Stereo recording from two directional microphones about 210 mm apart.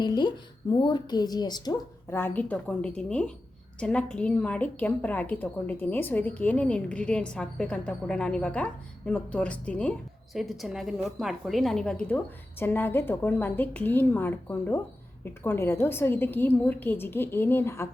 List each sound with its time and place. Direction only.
0.0 s a woman's voice: 20° left (ahead or behind)